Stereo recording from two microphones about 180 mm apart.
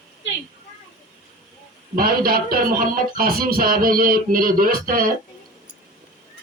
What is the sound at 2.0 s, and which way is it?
Speech, 55° right (ahead or behind).